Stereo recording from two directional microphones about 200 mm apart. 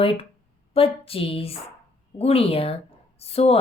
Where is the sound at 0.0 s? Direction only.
25° left (ahead or behind).